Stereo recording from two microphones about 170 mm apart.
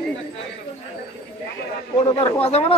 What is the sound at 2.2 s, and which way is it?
Speech, 35° left (ahead or behind).